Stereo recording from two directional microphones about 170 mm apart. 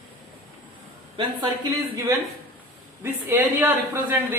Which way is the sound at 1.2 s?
25° right (ahead or behind).